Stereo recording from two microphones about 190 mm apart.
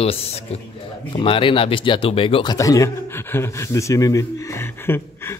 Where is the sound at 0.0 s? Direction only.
30° left (ahead or behind).